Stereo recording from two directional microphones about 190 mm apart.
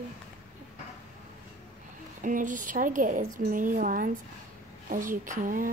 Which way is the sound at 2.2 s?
45° right (ahead or behind).